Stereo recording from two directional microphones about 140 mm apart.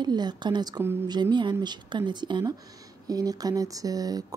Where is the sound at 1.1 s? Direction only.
30° right (ahead or behind).